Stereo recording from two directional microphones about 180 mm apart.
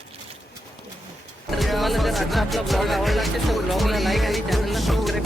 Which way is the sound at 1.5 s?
Centre (ahead or behind).